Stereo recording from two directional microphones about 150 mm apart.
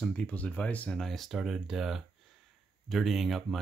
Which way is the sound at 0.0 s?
5° left (ahead or behind).